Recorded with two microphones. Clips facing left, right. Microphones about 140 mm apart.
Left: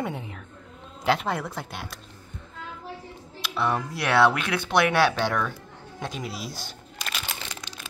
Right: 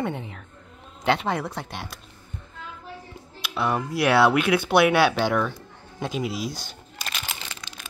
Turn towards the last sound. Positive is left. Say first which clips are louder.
# even
turn(degrees=0)  # may be behind; listen again after turning